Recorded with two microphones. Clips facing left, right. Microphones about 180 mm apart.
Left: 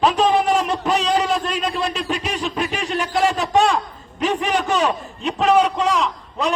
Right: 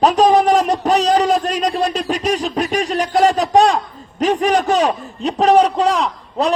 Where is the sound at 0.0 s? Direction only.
40° right (ahead or behind).